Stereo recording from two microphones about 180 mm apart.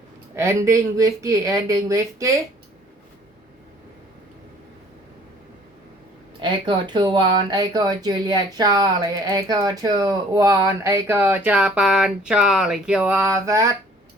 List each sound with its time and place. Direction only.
0.3 s speech: 15° right (ahead or behind)
6.4 s speech: 25° right (ahead or behind)